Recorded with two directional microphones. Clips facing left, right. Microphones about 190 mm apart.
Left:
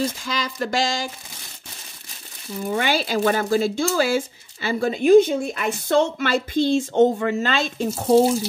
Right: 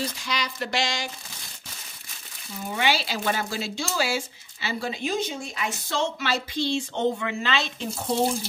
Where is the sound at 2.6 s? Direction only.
50° left (ahead or behind).